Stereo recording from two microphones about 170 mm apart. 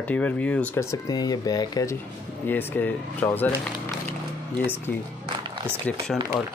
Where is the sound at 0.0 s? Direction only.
10° left (ahead or behind).